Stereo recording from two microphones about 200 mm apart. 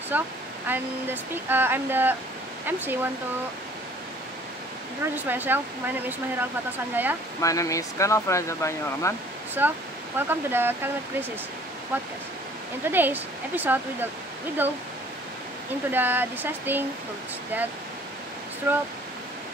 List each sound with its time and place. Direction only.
0.1 s speech: 10° right (ahead or behind)
5.1 s speech: 10° right (ahead or behind)
7.4 s speech: 15° left (ahead or behind)
9.6 s speech: 10° right (ahead or behind)
15.9 s speech: 10° right (ahead or behind)